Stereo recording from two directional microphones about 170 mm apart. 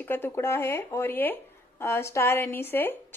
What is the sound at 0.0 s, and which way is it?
Speech, 10° left (ahead or behind).